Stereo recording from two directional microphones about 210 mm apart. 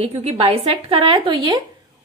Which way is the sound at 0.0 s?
30° right (ahead or behind).